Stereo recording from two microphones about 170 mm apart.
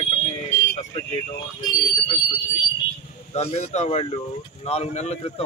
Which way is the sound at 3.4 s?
40° left (ahead or behind).